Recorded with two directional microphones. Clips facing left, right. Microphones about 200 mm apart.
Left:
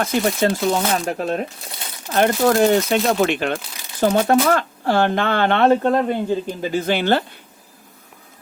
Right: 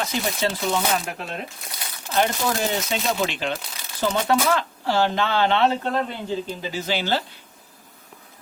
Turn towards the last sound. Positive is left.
turn(degrees=55)  # may be behind; listen again after turning